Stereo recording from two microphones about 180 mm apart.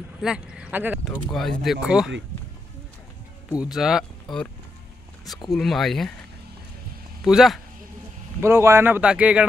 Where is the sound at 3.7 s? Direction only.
Centre (ahead or behind).